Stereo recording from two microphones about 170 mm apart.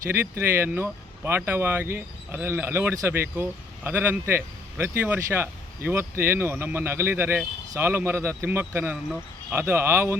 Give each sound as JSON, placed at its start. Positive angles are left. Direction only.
{"t": 0.1, "sound": "speech", "side_deg": -15}